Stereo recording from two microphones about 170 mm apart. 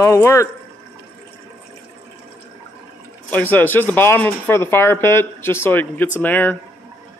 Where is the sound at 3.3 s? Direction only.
10° left (ahead or behind).